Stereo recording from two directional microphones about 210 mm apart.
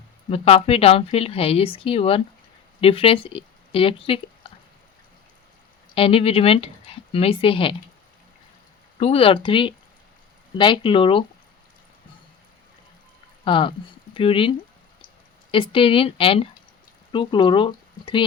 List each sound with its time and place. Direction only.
0.3 s speech: 30° left (ahead or behind)
5.9 s a woman's voice: 25° left (ahead or behind)
9.0 s speech: 30° left (ahead or behind)
13.4 s speech: 25° left (ahead or behind)
15.5 s speech: 25° left (ahead or behind)